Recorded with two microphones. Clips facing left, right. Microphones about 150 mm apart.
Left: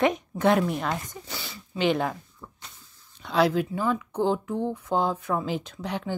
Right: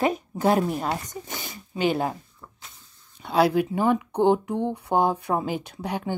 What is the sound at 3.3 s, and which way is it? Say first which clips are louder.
Speech: right 2 dB; 10° right (ahead or behind).